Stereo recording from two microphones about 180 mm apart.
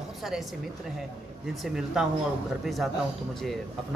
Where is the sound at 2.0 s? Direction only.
Centre (ahead or behind).